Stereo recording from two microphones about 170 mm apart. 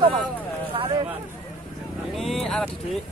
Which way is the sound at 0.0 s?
30° right (ahead or behind).